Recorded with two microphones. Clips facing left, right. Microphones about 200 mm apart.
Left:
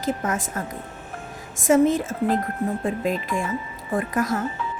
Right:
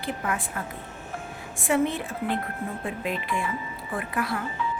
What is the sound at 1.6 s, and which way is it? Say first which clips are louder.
A woman's voice: left 7 dB; 40° left (ahead or behind).